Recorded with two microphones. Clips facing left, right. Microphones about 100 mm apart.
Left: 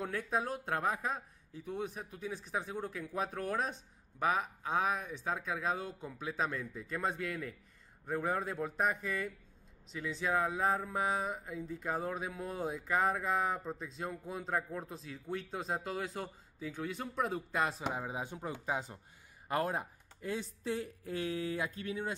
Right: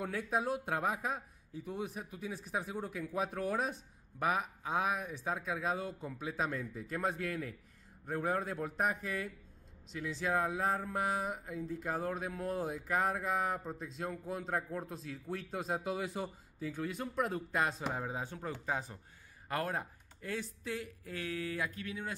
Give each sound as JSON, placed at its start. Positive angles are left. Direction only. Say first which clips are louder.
{"t": 0.0, "sound": "speech", "louder": "even", "side_deg": -10}
{"t": 16.6, "sound": "speech", "louder": "right 1 dB", "side_deg": 0}